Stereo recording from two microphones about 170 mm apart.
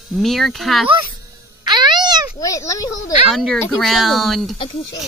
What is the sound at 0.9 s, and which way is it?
Speech, 30° right (ahead or behind).